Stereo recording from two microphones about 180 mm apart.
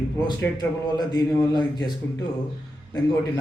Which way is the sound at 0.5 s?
20° left (ahead or behind).